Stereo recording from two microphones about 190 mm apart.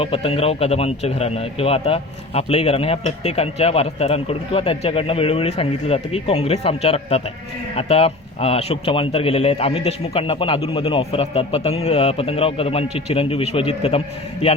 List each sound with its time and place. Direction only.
0.0 s speech: 30° left (ahead or behind)